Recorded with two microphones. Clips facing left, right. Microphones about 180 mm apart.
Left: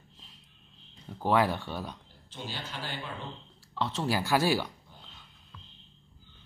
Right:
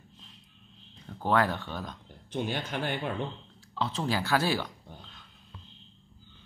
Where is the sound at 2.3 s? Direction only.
55° right (ahead or behind).